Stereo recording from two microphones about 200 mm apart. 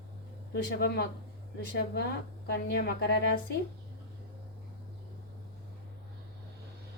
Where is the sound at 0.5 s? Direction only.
50° left (ahead or behind).